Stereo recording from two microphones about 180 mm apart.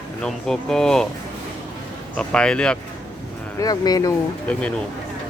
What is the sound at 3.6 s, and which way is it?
Speech, 20° left (ahead or behind).